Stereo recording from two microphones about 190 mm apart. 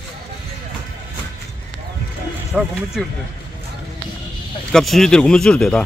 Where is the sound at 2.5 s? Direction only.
5° right (ahead or behind).